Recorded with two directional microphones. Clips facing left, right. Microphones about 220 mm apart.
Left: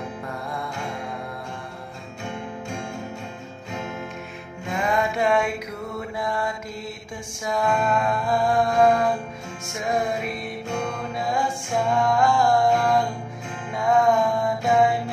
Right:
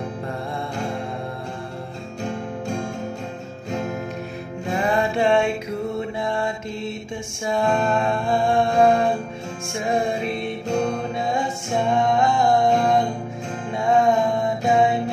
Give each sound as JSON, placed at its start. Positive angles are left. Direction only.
{"t": 2.2, "sound": "music", "side_deg": -40}
{"t": 4.6, "sound": "mantra", "side_deg": -35}
{"t": 9.7, "sound": "music", "side_deg": -30}